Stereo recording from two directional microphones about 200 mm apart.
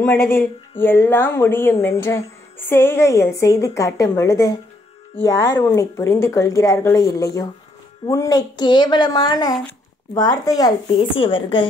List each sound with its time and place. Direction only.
0.0 s a woman's voice: 10° left (ahead or behind)